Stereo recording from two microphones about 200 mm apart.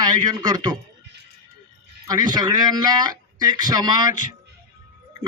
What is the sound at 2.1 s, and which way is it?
A man's voice, 20° right (ahead or behind).